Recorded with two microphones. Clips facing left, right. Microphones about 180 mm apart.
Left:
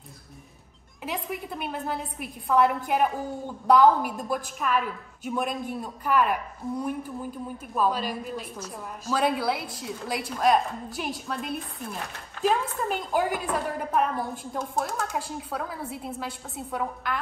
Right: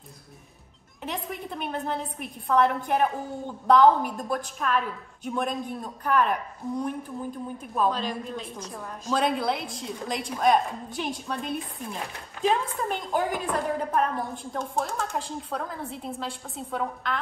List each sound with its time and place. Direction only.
1.0 s speech: 5° left (ahead or behind)